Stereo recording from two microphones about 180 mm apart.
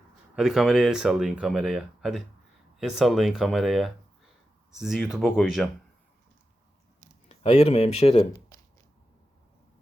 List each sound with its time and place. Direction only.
0.3 s speech: centre (ahead or behind)
7.3 s speech: 35° left (ahead or behind)
8.5 s a sound: 15° left (ahead or behind)